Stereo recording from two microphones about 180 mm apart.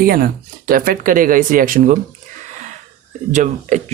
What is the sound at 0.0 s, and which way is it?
Speech, 55° right (ahead or behind).